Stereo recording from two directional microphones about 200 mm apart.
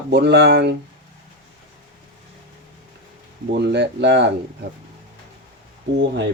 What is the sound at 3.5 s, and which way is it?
Speech, 60° right (ahead or behind).